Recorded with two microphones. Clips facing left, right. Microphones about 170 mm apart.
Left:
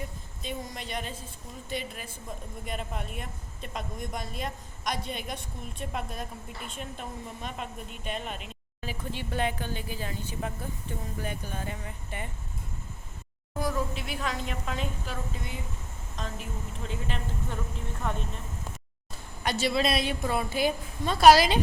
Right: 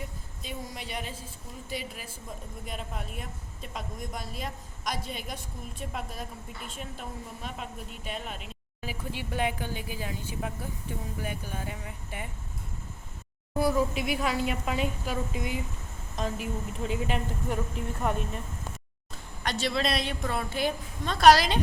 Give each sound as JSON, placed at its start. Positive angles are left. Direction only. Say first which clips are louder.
{"t": 0.4, "sound": "a woman's voice", "louder": "left 2 dB", "side_deg": -5}
{"t": 13.6, "sound": "a woman's voice", "louder": "right 5 dB", "side_deg": -10}
{"t": 19.4, "sound": "speech", "louder": "left 2 dB", "side_deg": 5}